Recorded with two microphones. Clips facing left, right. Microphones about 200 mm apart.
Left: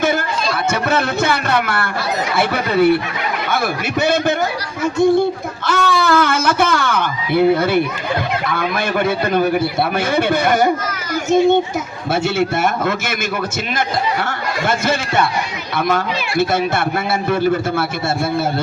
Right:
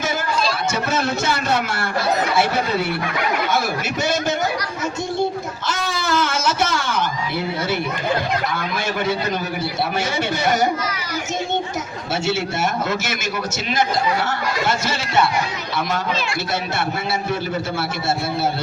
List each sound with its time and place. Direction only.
0.0 s chatter: 60° left (ahead or behind)
0.7 s a man's voice: 60° left (ahead or behind)
4.0 s a man's voice: 60° left (ahead or behind)
5.6 s a man's voice: 60° left (ahead or behind)
16.4 s speech: 55° left (ahead or behind)